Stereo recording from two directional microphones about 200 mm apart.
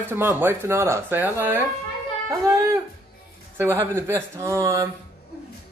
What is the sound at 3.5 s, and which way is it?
Speech, 15° right (ahead or behind).